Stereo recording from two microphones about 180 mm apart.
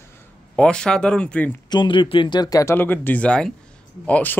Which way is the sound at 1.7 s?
25° left (ahead or behind).